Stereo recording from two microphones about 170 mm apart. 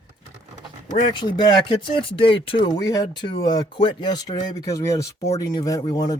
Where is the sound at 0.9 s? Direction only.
25° left (ahead or behind).